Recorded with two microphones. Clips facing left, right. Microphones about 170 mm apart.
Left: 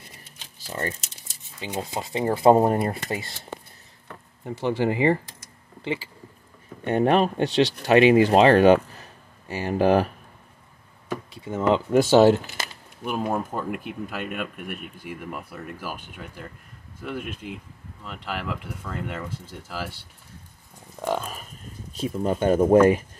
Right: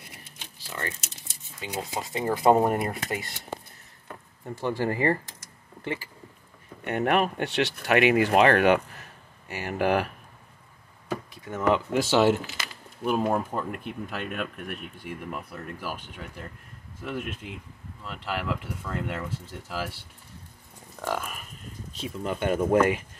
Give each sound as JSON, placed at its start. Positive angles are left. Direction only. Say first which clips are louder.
{"t": 0.7, "sound": "speech", "louder": "left 5 dB", "side_deg": 40}
{"t": 2.1, "sound": "speech", "louder": "left 4 dB", "side_deg": 30}
{"t": 4.5, "sound": "speech", "louder": "left 4 dB", "side_deg": 20}
{"t": 6.8, "sound": "speech", "louder": "left 4 dB", "side_deg": 30}
{"t": 11.4, "sound": "speech", "louder": "left 2 dB", "side_deg": 25}
{"t": 11.9, "sound": "speech", "louder": "left 10 dB", "side_deg": 45}
{"t": 13.0, "sound": "speech", "louder": "right 1 dB", "side_deg": 0}
{"t": 17.0, "sound": "speech", "louder": "left 1 dB", "side_deg": 0}
{"t": 21.0, "sound": "speech", "louder": "left 4 dB", "side_deg": 20}
{"t": 21.9, "sound": "speech", "louder": "left 6 dB", "side_deg": 45}